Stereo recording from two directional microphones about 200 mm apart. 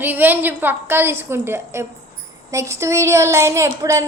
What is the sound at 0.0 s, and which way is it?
A woman's voice, 10° right (ahead or behind).